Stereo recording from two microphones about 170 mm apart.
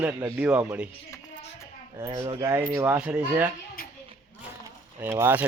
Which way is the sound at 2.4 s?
20° right (ahead or behind).